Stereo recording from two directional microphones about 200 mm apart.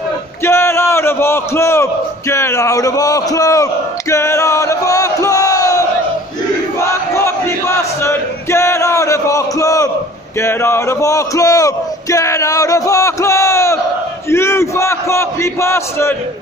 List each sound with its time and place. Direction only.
0.4 s a man's voice: 15° left (ahead or behind)
4.1 s a sound: 15° left (ahead or behind)
6.8 s battle cry: 15° left (ahead or behind)
10.4 s speech: 15° left (ahead or behind)